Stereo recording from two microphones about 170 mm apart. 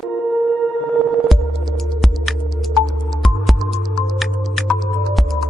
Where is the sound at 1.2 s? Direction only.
Centre (ahead or behind).